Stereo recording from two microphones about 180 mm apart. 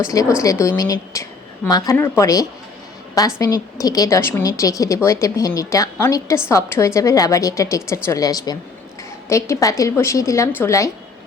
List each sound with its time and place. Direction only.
0.0 s a woman's voice: 15° left (ahead or behind)